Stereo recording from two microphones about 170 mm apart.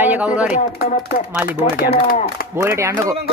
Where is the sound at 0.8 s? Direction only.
55° left (ahead or behind).